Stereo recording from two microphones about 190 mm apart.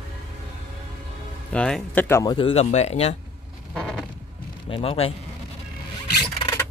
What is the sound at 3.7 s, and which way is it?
Zipper, 5° left (ahead or behind).